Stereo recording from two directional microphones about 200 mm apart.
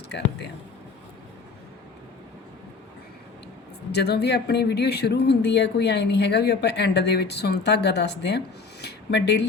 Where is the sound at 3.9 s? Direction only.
55° left (ahead or behind).